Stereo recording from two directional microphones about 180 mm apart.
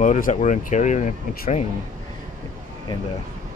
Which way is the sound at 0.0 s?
45° left (ahead or behind).